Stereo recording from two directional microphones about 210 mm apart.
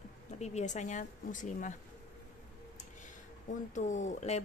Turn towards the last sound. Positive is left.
turn(degrees=35)  # may be behind; listen again after turning